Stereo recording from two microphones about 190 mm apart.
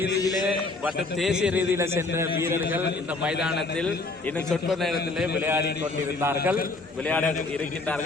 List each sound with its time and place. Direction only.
0.2 s a sound: 20° left (ahead or behind)
0.4 s a man's voice: 5° right (ahead or behind)
4.4 s a man's voice: centre (ahead or behind)
5.4 s a man's voice: 10° right (ahead or behind)
7.1 s a man's voice: 5° left (ahead or behind)